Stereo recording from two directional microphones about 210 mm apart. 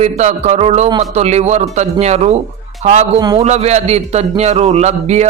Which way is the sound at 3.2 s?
20° right (ahead or behind).